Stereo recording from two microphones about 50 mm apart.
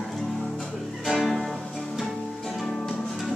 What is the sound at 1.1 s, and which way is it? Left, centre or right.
Music, centre.